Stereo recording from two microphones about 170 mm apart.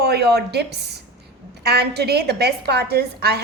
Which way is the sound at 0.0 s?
70° right (ahead or behind).